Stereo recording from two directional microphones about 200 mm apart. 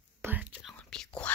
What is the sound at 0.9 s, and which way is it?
Speech, 5° left (ahead or behind).